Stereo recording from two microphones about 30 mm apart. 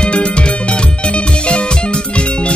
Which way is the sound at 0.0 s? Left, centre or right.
Left.